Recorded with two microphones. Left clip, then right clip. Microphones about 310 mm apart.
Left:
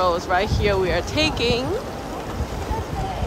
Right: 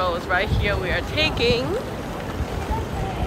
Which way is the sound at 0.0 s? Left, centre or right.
Centre.